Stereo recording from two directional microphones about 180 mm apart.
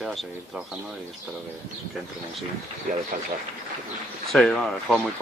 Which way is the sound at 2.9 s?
45° right (ahead or behind).